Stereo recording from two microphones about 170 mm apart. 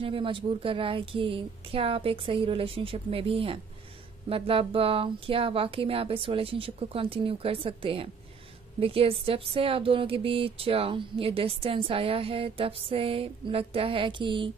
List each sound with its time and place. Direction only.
0.0 s speech: 30° right (ahead or behind)